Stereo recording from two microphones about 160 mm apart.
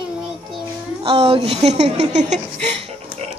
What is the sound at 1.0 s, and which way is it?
A woman's voice, 35° right (ahead or behind).